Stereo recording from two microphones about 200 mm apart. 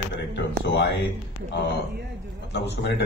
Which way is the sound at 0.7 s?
60° left (ahead or behind).